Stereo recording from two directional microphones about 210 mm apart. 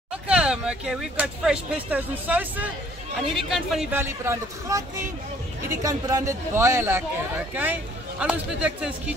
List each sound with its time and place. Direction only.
0.3 s a man's voice: 5° right (ahead or behind)